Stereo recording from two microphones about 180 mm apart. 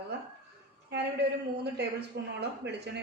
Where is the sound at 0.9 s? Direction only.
70° right (ahead or behind).